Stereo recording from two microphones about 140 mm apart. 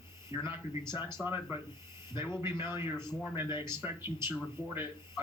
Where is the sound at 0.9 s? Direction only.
35° left (ahead or behind).